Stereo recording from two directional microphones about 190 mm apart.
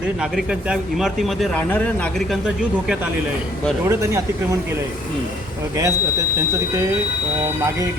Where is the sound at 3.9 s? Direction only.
15° right (ahead or behind).